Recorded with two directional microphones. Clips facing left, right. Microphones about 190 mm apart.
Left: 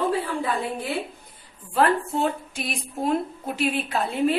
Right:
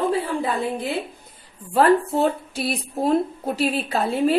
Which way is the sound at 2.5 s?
35° right (ahead or behind).